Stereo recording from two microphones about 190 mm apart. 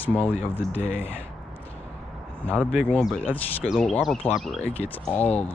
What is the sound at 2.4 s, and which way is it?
Speech, 5° left (ahead or behind).